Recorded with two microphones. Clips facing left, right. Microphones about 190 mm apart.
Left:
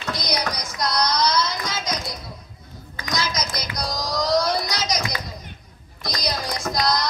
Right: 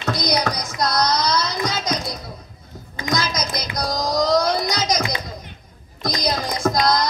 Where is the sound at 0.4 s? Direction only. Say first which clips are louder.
Right 4 dB; 50° right (ahead or behind).